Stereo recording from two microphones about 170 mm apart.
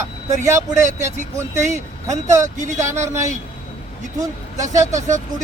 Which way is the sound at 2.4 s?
45° right (ahead or behind).